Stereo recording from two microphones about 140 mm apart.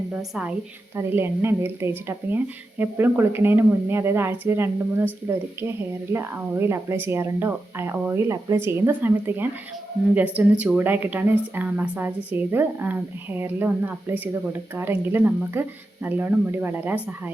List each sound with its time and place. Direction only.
0.1 s speech: 5° right (ahead or behind)